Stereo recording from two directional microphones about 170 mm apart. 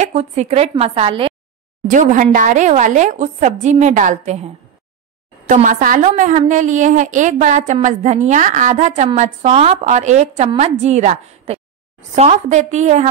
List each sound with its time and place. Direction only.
0.0 s a woman's voice: 40° right (ahead or behind)
1.9 s a woman's voice: 50° right (ahead or behind)
5.5 s a woman's voice: 50° right (ahead or behind)